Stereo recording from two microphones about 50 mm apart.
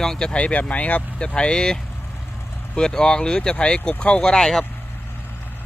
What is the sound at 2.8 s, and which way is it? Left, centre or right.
Speech, centre.